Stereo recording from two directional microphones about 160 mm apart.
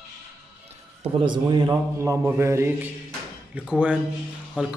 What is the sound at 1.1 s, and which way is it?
A man's voice, 30° right (ahead or behind).